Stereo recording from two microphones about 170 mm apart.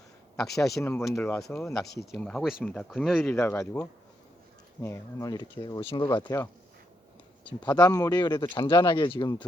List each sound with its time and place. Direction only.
0.3 s speech: centre (ahead or behind)
0.8 s speech: 15° left (ahead or behind)
1.4 s speech: centre (ahead or behind)
3.3 s speech: 15° left (ahead or behind)
4.8 s speech: 15° left (ahead or behind)
7.6 s speech: 25° left (ahead or behind)